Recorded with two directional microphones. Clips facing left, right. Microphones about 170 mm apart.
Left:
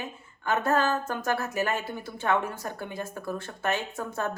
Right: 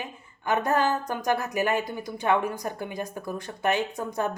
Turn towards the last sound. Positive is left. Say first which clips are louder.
# right 3 dB
turn(degrees=-15)  # may be behind; listen again after turning